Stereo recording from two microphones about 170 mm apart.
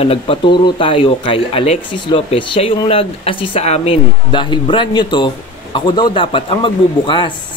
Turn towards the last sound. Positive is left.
turn(degrees=30)  # may be behind; listen again after turning